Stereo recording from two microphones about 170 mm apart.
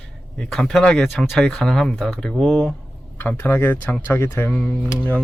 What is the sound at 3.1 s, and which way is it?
Speech, 10° left (ahead or behind).